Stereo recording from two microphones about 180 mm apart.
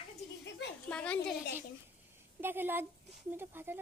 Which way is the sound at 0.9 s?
5° left (ahead or behind).